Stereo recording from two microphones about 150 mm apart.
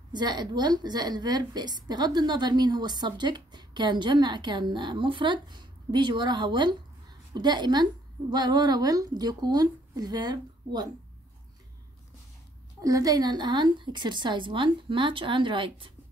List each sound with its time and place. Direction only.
0.1 s a woman's voice: 30° right (ahead or behind)
12.8 s a woman's voice: 25° right (ahead or behind)